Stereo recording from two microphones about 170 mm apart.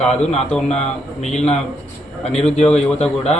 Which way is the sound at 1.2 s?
40° left (ahead or behind).